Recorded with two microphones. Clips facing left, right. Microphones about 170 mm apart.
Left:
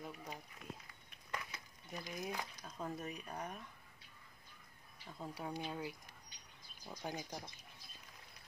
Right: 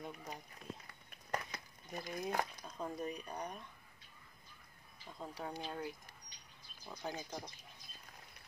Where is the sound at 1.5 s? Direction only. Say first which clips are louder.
Right 2 dB; 55° right (ahead or behind).